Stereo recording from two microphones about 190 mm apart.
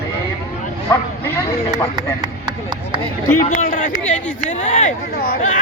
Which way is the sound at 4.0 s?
90° left.